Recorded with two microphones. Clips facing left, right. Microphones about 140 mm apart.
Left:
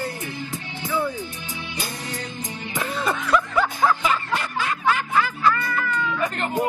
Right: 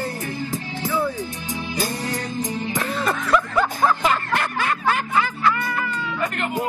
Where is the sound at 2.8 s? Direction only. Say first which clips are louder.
Left 1 dB; centre (ahead or behind).